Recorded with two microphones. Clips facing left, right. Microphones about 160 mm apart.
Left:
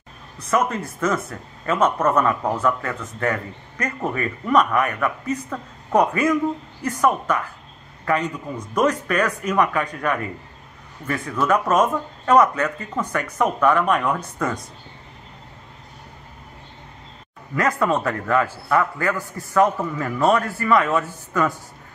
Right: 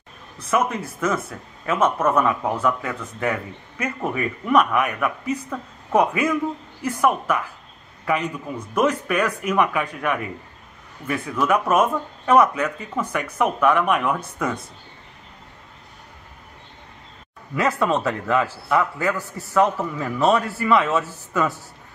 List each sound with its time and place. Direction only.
0.5 s speech: 5° right (ahead or behind)
17.8 s speech: 20° right (ahead or behind)
18.2 s a man's voice: 5° right (ahead or behind)